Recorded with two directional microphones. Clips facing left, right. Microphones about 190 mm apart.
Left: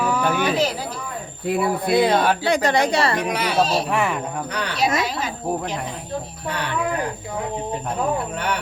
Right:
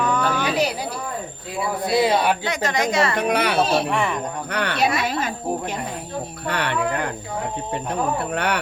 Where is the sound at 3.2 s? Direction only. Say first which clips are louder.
Right 1 dB; 60° right (ahead or behind).